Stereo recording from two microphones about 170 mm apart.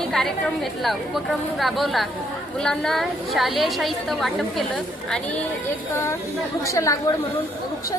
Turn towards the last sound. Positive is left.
turn(degrees=20)  # may be behind; listen again after turning